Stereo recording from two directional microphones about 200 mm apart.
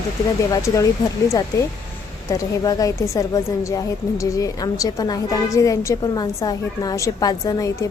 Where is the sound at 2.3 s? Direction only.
15° left (ahead or behind).